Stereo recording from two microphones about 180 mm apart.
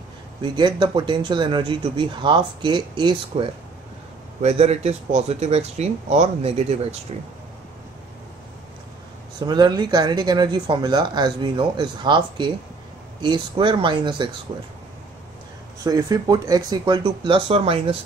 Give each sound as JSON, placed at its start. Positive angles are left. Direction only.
{"t": 0.4, "sound": "speech", "side_deg": -25}
{"t": 4.4, "sound": "speech", "side_deg": -35}
{"t": 9.4, "sound": "speech", "side_deg": -25}
{"t": 15.8, "sound": "speech", "side_deg": -20}